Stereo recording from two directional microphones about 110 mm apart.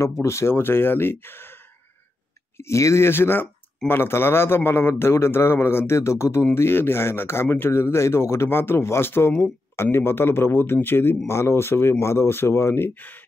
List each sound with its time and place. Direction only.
0.0 s speech: 25° left (ahead or behind)